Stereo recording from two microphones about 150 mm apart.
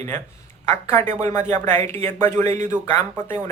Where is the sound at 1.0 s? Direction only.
45° right (ahead or behind).